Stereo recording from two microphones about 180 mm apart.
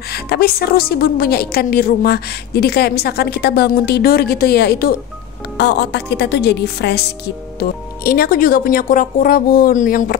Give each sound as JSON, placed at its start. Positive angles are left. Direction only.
{"t": 0.1, "sound": "a woman's voice", "side_deg": 60}